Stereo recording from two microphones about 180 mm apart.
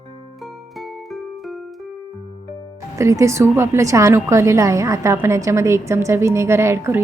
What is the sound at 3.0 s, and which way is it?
A woman's voice, 15° right (ahead or behind).